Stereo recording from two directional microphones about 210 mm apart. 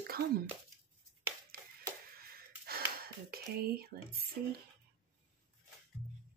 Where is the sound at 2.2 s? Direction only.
45° right (ahead or behind).